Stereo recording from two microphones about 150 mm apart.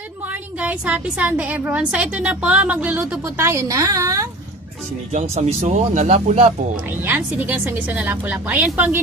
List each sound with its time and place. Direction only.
0.6 s a woman's voice: 10° right (ahead or behind)
5.1 s speech: 45° right (ahead or behind)
7.0 s a woman's voice: 10° right (ahead or behind)